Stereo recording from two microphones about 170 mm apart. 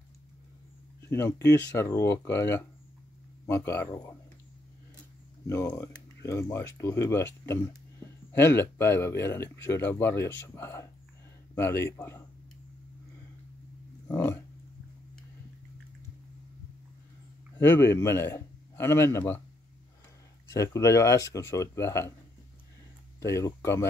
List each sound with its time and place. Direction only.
1.0 s speech: 15° left (ahead or behind)
5.5 s speech: 15° left (ahead or behind)
14.0 s a sound: 15° left (ahead or behind)
17.6 s speech: 15° left (ahead or behind)
20.5 s speech: 20° left (ahead or behind)
23.2 s speech: 15° left (ahead or behind)